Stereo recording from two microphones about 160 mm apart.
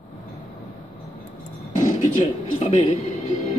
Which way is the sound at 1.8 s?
50° left (ahead or behind).